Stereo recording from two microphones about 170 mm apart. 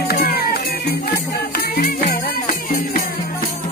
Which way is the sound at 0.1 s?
65° left (ahead or behind).